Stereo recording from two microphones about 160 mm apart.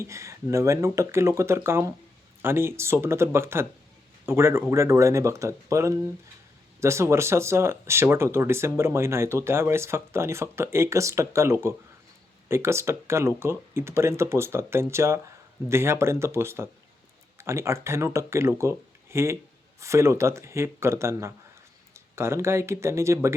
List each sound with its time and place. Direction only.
0.0 s speech: 20° right (ahead or behind)